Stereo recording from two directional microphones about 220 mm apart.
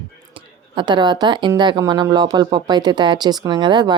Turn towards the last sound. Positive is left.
turn(degrees=-20)  # may be behind; listen again after turning